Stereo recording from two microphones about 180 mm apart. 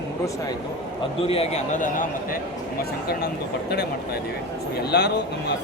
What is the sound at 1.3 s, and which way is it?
Speech, 35° left (ahead or behind).